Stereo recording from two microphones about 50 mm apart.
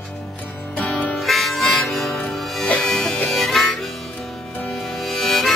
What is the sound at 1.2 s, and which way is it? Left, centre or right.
Harmonica, centre.